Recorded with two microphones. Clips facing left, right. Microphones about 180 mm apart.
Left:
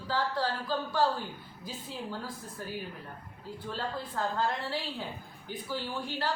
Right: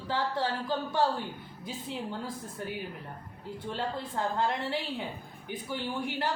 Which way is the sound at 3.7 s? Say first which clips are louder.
Right 1 dB; 20° right (ahead or behind).